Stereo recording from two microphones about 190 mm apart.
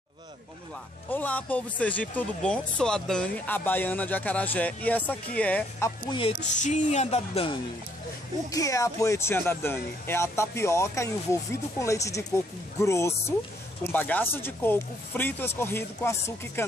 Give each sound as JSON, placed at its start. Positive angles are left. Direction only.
{"t": 1.1, "sound": "speech", "side_deg": 10}
{"t": 6.0, "sound": "speech", "side_deg": 25}
{"t": 6.4, "sound": "speech", "side_deg": 40}
{"t": 8.5, "sound": "speech", "side_deg": 15}